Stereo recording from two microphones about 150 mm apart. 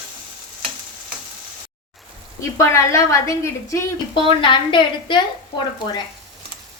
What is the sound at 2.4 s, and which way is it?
A woman's voice, 20° left (ahead or behind).